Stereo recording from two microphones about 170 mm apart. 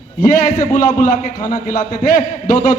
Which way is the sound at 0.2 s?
55° left (ahead or behind).